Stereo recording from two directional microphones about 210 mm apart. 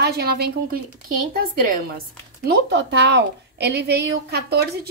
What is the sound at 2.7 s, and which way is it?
A woman's voice, 55° right (ahead or behind).